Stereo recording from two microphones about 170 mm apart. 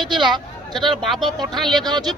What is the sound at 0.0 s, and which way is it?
A man's voice, 25° right (ahead or behind).